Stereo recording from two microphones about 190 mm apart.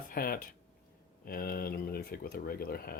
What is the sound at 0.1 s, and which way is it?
Speech, 50° left (ahead or behind).